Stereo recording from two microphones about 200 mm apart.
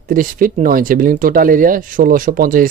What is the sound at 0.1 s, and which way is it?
Speech, 45° right (ahead or behind).